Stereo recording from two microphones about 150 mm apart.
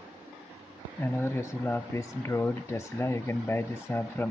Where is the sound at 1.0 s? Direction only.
15° left (ahead or behind).